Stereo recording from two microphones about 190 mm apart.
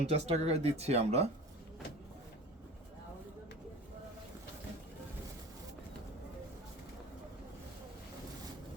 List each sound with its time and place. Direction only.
0.0 s speech: 35° right (ahead or behind)